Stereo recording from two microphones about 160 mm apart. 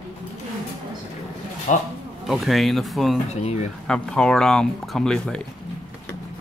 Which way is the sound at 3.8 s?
5° left (ahead or behind).